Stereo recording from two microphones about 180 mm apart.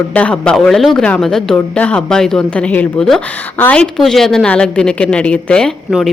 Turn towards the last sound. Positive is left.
turn(degrees=0)  # may be behind; listen again after turning